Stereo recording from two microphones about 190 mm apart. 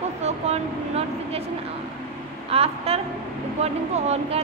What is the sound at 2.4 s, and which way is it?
A woman's voice, 30° right (ahead or behind).